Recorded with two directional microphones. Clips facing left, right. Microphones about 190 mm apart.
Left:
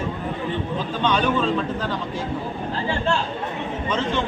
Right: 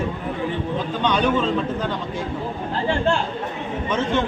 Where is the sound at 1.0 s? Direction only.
15° right (ahead or behind).